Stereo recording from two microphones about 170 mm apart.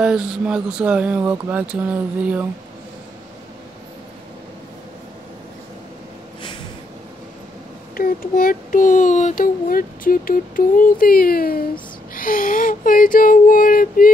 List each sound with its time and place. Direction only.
0.0 s speech: 5° right (ahead or behind)
7.9 s a child's voice: 55° left (ahead or behind)